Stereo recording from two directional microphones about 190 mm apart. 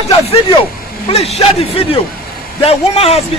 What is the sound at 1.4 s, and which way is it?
A man's voice, 30° left (ahead or behind).